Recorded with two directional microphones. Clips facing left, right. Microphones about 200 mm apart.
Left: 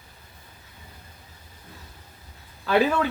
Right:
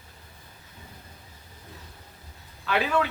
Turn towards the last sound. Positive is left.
turn(degrees=40)  # may be behind; listen again after turning